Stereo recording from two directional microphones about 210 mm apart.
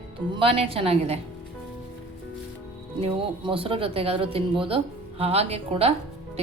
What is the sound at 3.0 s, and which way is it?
Speech, 25° right (ahead or behind).